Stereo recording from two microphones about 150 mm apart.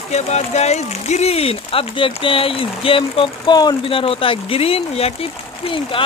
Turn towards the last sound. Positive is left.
turn(degrees=35)  # may be behind; listen again after turning